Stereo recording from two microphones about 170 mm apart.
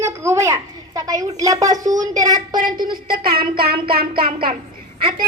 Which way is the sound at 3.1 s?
60° right (ahead or behind).